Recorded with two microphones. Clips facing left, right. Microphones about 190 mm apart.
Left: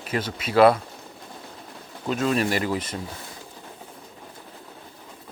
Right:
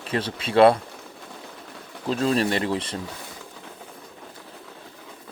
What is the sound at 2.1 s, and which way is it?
Speech, 30° right (ahead or behind).